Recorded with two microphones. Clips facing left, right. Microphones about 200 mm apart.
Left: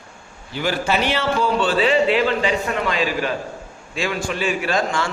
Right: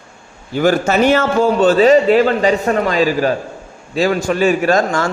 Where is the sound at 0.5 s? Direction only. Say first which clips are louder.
Right 8 dB; 45° right (ahead or behind).